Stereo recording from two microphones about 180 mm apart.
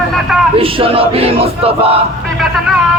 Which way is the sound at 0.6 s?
30° right (ahead or behind).